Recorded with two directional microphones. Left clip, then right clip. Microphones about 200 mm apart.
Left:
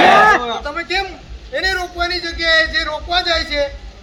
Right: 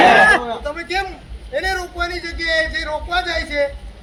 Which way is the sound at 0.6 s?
Centre (ahead or behind).